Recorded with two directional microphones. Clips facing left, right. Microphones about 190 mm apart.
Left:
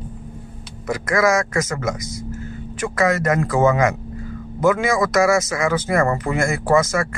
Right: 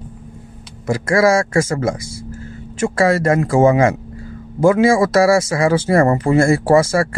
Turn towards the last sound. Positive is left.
turn(degrees=-30)  # may be behind; listen again after turning